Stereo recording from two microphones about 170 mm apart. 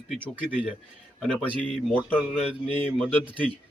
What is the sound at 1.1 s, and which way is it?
A man's voice, 5° left (ahead or behind).